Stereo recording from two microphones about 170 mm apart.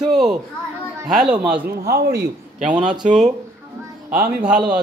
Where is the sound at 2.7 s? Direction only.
5° right (ahead or behind).